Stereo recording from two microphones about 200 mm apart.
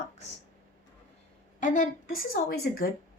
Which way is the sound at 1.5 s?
40° left (ahead or behind).